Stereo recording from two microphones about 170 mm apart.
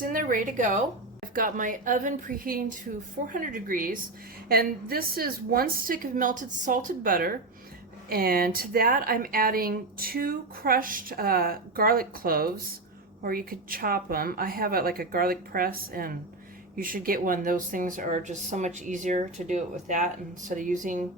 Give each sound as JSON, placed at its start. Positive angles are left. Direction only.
{"t": 0.0, "sound": "a woman's voice", "side_deg": -55}